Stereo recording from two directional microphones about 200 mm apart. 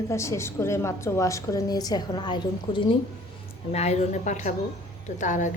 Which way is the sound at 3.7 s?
35° left (ahead or behind).